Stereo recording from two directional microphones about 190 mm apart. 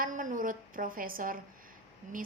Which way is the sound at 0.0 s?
45° right (ahead or behind).